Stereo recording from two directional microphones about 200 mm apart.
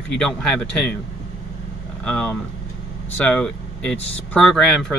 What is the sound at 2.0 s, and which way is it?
Speech, 5° left (ahead or behind).